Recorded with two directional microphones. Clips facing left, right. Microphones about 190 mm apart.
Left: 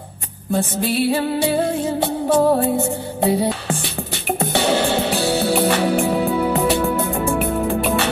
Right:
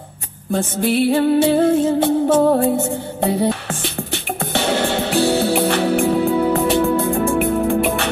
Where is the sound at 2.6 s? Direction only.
20° right (ahead or behind).